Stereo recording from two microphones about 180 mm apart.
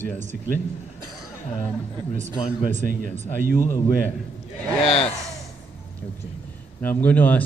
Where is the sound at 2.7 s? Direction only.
40° right (ahead or behind).